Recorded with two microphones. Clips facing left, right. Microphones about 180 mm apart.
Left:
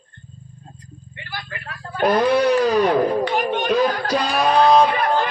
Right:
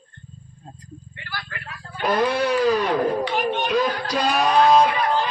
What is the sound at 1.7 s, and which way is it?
Guitar, 50° left (ahead or behind).